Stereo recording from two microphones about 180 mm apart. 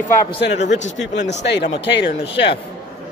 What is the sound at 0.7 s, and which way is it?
Speech, 85° left.